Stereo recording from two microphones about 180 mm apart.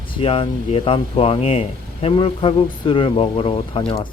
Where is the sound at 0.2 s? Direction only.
30° left (ahead or behind).